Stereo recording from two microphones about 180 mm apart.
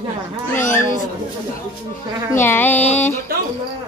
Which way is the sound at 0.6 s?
15° left (ahead or behind).